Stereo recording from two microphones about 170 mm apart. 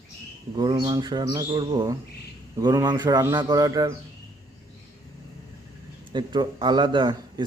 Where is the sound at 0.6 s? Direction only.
25° right (ahead or behind).